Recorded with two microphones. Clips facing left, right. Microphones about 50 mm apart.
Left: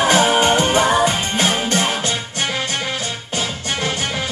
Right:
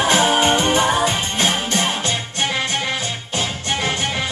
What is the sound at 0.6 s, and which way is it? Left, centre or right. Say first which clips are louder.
Music: left 1 dB; left.